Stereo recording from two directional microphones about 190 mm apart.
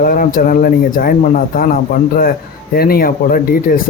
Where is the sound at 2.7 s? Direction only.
50° left (ahead or behind).